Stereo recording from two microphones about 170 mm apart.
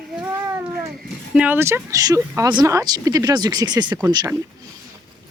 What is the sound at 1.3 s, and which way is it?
Speech, 10° right (ahead or behind).